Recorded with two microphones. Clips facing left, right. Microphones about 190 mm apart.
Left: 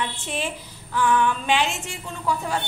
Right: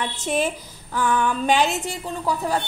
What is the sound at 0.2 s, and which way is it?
A woman's voice, 45° right (ahead or behind).